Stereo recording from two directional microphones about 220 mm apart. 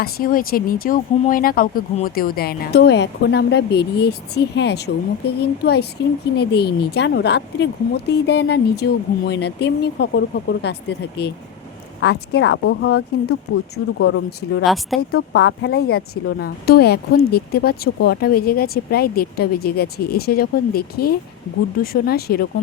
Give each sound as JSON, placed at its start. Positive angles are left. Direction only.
{"t": 0.0, "sound": "speech", "side_deg": 40}
{"t": 14.6, "sound": "speech", "side_deg": 0}
{"t": 15.4, "sound": "speech", "side_deg": 50}